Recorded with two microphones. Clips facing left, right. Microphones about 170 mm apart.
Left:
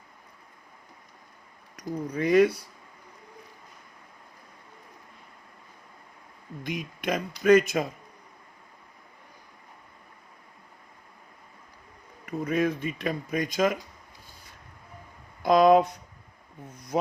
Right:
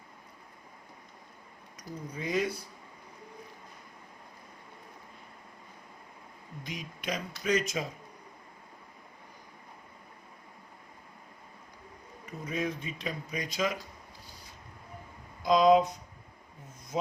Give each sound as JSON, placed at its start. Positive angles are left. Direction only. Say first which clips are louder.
{"t": 1.7, "sound": "speech", "louder": "left 10 dB", "side_deg": 65}
{"t": 6.6, "sound": "speech", "louder": "left 8 dB", "side_deg": 55}
{"t": 12.2, "sound": "speech", "louder": "left 8 dB", "side_deg": 60}
{"t": 15.4, "sound": "speech", "louder": "left 4 dB", "side_deg": 60}